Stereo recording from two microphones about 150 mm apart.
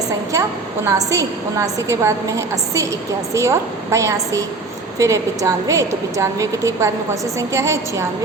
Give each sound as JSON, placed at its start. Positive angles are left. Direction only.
{"t": 0.9, "sound": "a woman's voice", "side_deg": -20}